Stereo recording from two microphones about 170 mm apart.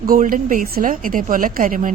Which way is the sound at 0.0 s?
55° right (ahead or behind).